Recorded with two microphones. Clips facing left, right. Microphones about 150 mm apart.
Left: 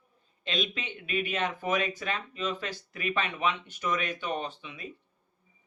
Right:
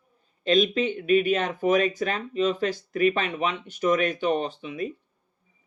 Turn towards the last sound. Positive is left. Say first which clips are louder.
# right 7 dB
turn(degrees=-40)  # may be behind; listen again after turning